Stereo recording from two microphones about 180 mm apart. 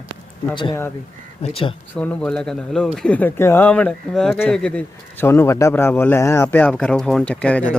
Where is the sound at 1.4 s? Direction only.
30° left (ahead or behind).